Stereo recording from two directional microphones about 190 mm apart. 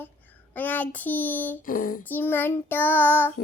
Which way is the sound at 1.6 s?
45° left (ahead or behind).